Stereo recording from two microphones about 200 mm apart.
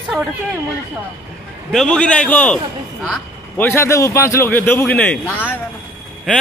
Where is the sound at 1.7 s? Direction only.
5° left (ahead or behind).